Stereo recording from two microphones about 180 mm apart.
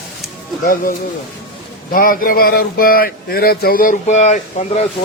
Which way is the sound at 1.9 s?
50° left (ahead or behind).